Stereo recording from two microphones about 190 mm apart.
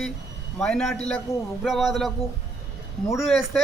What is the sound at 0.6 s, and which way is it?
Speech, centre (ahead or behind).